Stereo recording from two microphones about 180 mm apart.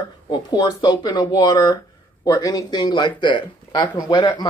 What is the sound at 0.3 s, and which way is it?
Speech, 25° left (ahead or behind).